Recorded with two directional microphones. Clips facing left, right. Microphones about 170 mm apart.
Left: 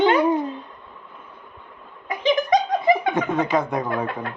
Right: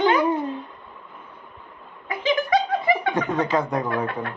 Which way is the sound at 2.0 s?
20° left (ahead or behind).